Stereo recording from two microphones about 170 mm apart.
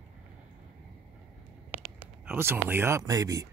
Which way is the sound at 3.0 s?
20° right (ahead or behind).